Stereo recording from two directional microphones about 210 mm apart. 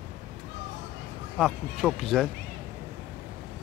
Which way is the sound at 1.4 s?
Centre (ahead or behind).